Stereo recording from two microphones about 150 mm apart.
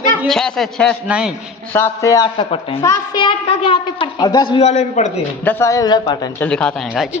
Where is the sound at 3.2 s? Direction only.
35° left (ahead or behind).